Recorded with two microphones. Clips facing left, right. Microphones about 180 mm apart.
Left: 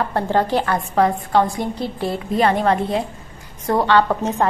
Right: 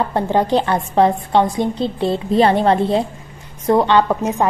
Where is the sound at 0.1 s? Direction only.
15° right (ahead or behind).